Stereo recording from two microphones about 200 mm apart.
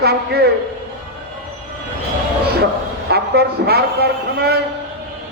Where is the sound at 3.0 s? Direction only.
55° right (ahead or behind).